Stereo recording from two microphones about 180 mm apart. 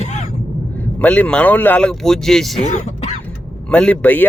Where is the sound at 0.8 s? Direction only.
10° left (ahead or behind).